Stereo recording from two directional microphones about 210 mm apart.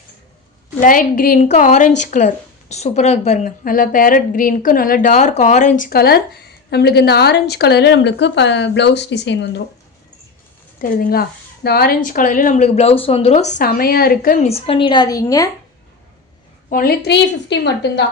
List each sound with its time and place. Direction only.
0.8 s a woman's voice: 40° left (ahead or behind); by 9.5 s 55° left (ahead or behind)
10.8 s speech: 45° left (ahead or behind)
14.5 s a woman's voice: 25° left (ahead or behind)
16.6 s a woman's voice: 45° left (ahead or behind)